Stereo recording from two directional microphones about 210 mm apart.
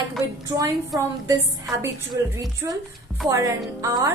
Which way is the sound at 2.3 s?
15° right (ahead or behind).